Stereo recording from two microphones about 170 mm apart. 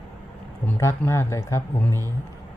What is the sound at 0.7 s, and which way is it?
Speech, 15° left (ahead or behind).